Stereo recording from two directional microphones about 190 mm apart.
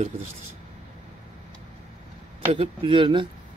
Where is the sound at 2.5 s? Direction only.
30° right (ahead or behind).